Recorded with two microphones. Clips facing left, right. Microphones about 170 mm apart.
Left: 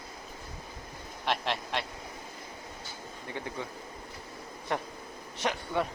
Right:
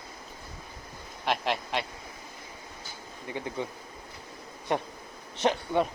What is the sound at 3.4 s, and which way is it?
Speech, 15° right (ahead or behind).